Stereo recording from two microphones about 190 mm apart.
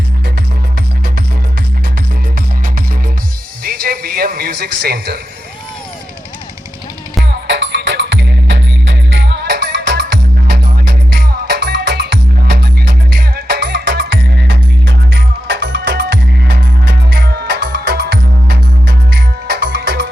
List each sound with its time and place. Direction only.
3.6 s music: 50° right (ahead or behind)
7.3 s music: 65° right (ahead or behind)